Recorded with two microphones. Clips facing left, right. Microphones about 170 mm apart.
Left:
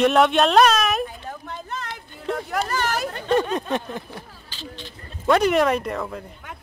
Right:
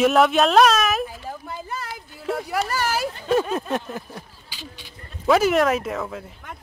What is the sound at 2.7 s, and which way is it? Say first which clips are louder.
Speech: even; 5° right (ahead or behind).